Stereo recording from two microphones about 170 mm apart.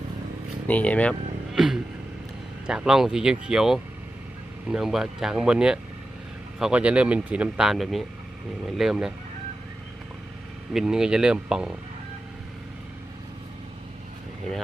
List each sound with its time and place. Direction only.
0.7 s speech: 10° left (ahead or behind)
10.7 s speech: 5° right (ahead or behind)